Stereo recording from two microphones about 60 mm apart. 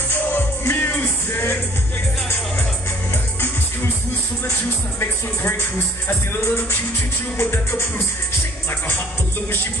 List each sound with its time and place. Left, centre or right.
0.1 s music: left
6.0 s music: left